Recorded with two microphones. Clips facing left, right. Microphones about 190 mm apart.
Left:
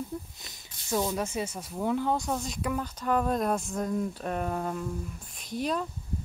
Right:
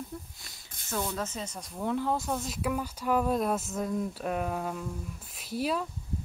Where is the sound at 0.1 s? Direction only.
20° left (ahead or behind).